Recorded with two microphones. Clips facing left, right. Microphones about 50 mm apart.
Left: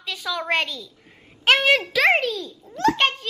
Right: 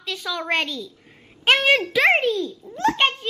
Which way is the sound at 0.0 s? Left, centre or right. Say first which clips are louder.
Even; centre.